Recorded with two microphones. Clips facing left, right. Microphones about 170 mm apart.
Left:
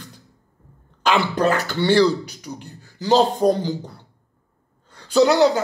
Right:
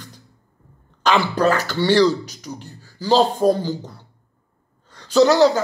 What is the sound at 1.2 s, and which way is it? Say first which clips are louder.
Speech: right 1 dB; 20° left (ahead or behind).